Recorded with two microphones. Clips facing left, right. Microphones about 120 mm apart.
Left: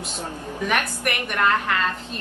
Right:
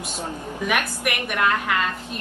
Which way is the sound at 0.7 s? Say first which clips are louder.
Even; 5° right (ahead or behind).